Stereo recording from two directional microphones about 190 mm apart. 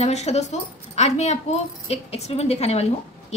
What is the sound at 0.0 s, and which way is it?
A woman's voice, 35° left (ahead or behind).